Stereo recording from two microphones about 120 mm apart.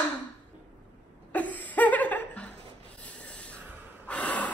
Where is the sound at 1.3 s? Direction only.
15° left (ahead or behind).